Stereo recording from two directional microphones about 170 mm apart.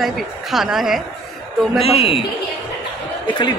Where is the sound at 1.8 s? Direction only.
35° left (ahead or behind).